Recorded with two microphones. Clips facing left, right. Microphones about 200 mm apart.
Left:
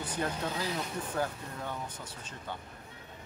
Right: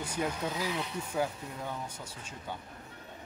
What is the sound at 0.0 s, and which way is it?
Speech, 10° right (ahead or behind).